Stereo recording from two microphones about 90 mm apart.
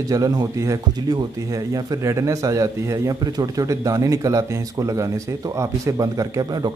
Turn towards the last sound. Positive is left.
turn(degrees=-50)  # may be behind; listen again after turning